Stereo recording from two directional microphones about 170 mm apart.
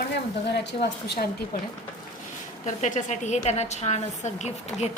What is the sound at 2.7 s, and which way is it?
A woman's voice, 45° left (ahead or behind).